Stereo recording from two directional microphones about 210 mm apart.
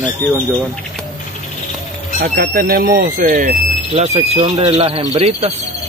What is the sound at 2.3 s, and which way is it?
Speech, 45° right (ahead or behind).